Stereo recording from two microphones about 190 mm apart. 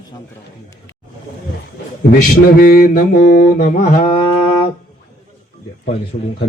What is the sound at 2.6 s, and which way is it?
Mantra, 50° left (ahead or behind).